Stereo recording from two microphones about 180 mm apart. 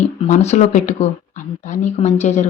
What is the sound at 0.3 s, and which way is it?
A woman's voice, 40° left (ahead or behind).